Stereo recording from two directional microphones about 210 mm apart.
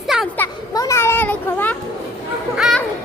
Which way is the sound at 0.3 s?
15° left (ahead or behind).